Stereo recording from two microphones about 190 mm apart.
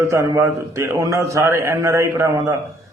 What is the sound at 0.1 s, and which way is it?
A man's voice, 15° right (ahead or behind).